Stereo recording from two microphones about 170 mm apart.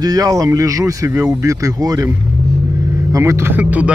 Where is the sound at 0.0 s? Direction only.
20° right (ahead or behind).